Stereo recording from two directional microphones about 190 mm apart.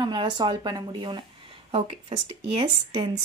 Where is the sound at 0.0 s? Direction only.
25° right (ahead or behind).